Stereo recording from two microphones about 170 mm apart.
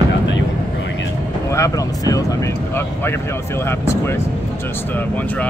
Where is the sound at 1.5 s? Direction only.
20° left (ahead or behind).